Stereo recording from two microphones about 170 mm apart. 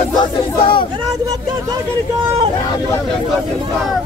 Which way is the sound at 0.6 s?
30° left (ahead or behind).